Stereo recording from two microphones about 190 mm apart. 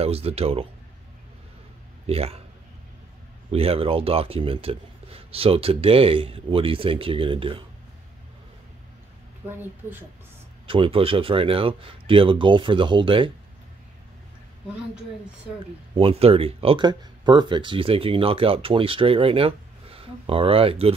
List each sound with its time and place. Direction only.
0.0 s speech: 30° right (ahead or behind)
2.0 s speech: 30° right (ahead or behind)
3.5 s speech: 30° right (ahead or behind)
9.6 s speech: 10° right (ahead or behind)
10.7 s speech: 30° right (ahead or behind)
16.0 s speech: 30° right (ahead or behind)